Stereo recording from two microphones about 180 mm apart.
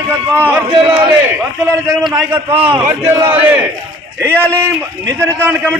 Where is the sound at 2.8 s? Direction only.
15° right (ahead or behind).